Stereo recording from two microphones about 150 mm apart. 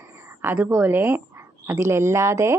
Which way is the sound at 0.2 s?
15° right (ahead or behind).